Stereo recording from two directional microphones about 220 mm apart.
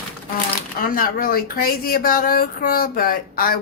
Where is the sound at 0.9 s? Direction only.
40° left (ahead or behind).